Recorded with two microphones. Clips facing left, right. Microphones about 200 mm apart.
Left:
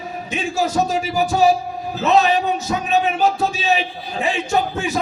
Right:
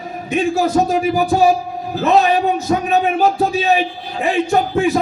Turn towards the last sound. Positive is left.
turn(degrees=-55)  # may be behind; listen again after turning